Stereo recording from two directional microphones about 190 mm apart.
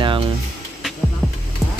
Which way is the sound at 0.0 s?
25° right (ahead or behind).